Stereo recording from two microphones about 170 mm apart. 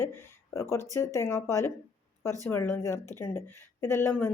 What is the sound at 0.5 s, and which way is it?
Speech, 15° left (ahead or behind).